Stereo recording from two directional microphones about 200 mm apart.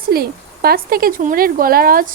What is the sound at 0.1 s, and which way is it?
A woman's voice, 50° right (ahead or behind).